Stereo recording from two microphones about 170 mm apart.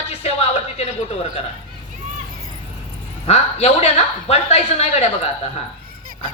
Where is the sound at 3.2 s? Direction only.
40° left (ahead or behind).